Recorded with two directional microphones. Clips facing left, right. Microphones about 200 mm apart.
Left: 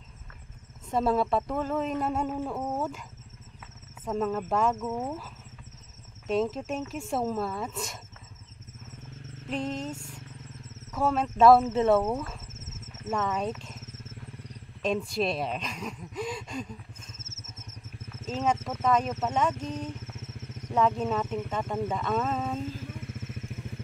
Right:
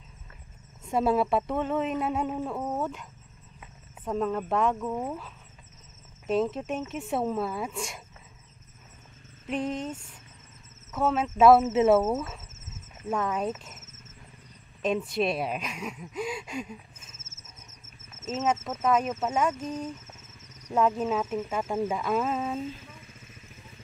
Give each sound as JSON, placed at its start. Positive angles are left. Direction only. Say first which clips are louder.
{"t": 0.8, "sound": "speech", "louder": "right 1 dB", "side_deg": -5}
{"t": 9.5, "sound": "speech", "louder": "right 2 dB", "side_deg": -5}
{"t": 10.9, "sound": "speech", "louder": "right 1 dB", "side_deg": 0}
{"t": 14.8, "sound": "speech", "louder": "right 1 dB", "side_deg": -5}
{"t": 19.9, "sound": "a sound", "louder": "left 2 dB", "side_deg": 55}
{"t": 20.7, "sound": "speech", "louder": "right 1 dB", "side_deg": -5}
{"t": 22.8, "sound": "vehicle", "louder": "left 10 dB", "side_deg": 70}